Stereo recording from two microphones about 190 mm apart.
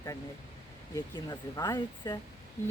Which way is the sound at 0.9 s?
20° left (ahead or behind).